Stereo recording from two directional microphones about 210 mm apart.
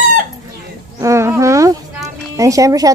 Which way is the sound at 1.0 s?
15° right (ahead or behind).